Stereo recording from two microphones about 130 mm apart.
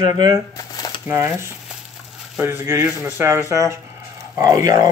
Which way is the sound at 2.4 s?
20° right (ahead or behind).